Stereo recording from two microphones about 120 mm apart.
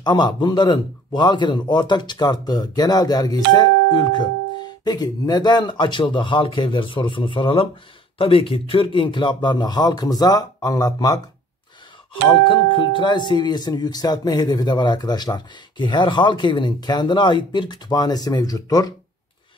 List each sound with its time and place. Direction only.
0.0 s speech: 35° left (ahead or behind)
12.3 s speech: 45° left (ahead or behind)